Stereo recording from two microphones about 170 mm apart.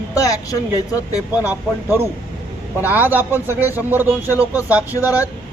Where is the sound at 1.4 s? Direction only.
15° right (ahead or behind).